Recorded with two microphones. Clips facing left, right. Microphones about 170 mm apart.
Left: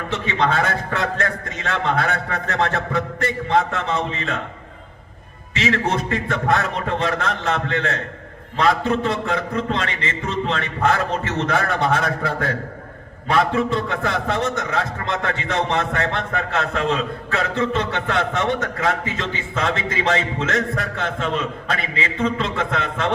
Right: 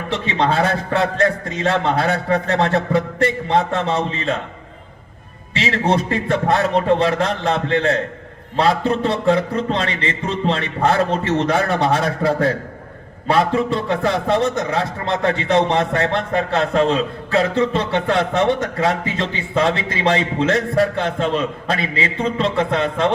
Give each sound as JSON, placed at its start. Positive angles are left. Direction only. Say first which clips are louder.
{"t": 0.1, "sound": "a man's voice", "louder": "right 2 dB", "side_deg": -30}
{"t": 5.5, "sound": "a man's voice", "louder": "right 3 dB", "side_deg": -30}